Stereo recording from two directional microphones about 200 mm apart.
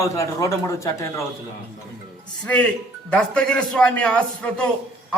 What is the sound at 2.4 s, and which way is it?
A man's voice, 5° left (ahead or behind).